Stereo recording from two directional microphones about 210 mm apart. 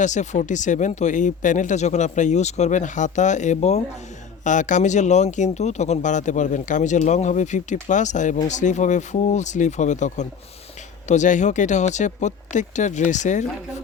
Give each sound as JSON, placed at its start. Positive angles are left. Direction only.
{"t": 0.0, "sound": "speech", "side_deg": 35}